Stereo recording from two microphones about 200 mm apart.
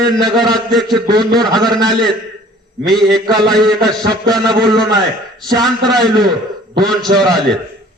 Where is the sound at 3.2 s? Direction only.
20° right (ahead or behind).